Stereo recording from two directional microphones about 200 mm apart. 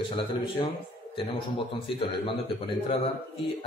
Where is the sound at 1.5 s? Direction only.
25° left (ahead or behind).